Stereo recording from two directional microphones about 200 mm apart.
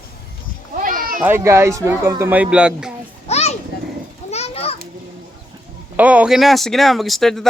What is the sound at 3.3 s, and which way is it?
Children playing, 30° left (ahead or behind).